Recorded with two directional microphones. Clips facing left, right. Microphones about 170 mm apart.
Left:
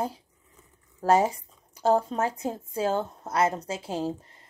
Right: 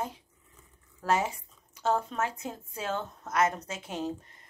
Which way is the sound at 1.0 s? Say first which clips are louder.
Left 7 dB; 35° left (ahead or behind).